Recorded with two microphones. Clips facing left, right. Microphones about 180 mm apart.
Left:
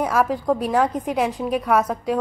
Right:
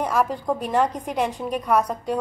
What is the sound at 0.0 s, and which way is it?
Speech, 5° left (ahead or behind).